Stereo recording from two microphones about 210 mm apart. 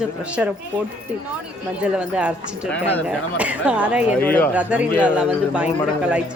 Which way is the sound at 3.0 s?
5° right (ahead or behind).